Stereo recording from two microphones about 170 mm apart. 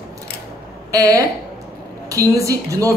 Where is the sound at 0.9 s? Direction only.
20° right (ahead or behind).